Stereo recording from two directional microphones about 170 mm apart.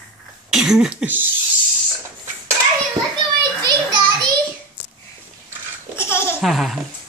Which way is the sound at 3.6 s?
25° right (ahead or behind).